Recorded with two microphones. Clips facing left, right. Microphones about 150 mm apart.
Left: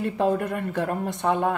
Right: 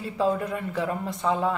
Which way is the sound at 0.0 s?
60° left (ahead or behind).